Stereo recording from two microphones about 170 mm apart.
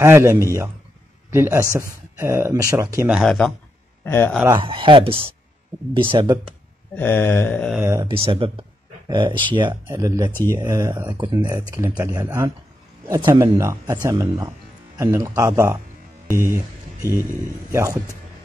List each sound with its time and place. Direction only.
0.0 s speech: 15° right (ahead or behind)
3.1 s speech: centre (ahead or behind)
4.5 s speech: 30° right (ahead or behind)
7.0 s a sound: 10° left (ahead or behind)
7.7 s speech: 15° right (ahead or behind)
8.0 s speech: 30° right (ahead or behind)